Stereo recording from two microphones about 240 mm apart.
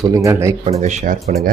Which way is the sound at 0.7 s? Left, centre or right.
Right.